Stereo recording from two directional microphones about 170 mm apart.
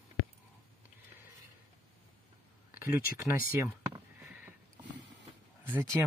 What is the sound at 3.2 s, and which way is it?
Speech, 10° right (ahead or behind).